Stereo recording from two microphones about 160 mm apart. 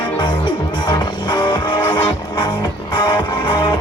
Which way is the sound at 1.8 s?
15° left (ahead or behind).